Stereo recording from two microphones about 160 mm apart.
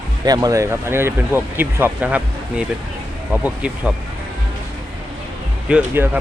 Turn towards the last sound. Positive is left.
turn(degrees=-10)  # may be behind; listen again after turning